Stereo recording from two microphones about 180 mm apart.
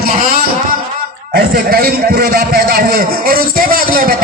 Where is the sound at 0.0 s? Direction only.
60° right (ahead or behind).